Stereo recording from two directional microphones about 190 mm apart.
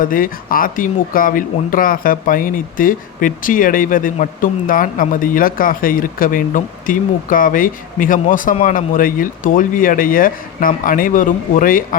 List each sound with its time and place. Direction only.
0.0 s speech: 45° left (ahead or behind)